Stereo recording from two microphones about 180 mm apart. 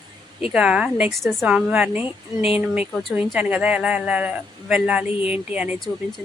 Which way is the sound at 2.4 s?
35° left (ahead or behind).